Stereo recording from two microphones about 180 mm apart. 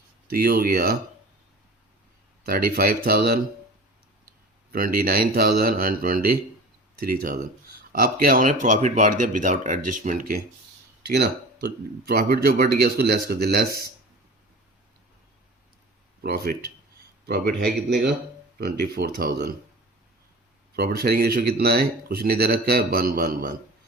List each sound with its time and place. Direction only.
0.3 s speech: 55° right (ahead or behind)
2.5 s speech: 55° right (ahead or behind)
4.7 s speech: 55° right (ahead or behind)
11.1 s speech: 65° right (ahead or behind)
16.2 s speech: 55° right (ahead or behind)
18.6 s speech: 60° right (ahead or behind)
20.7 s speech: 65° right (ahead or behind)